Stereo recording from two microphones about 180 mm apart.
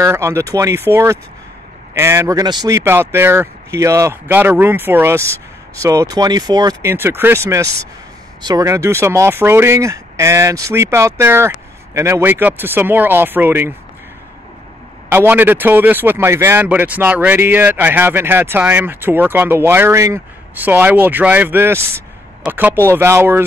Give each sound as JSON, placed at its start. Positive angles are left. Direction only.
{"t": 0.0, "sound": "speech", "side_deg": -15}
{"t": 15.0, "sound": "speech", "side_deg": -10}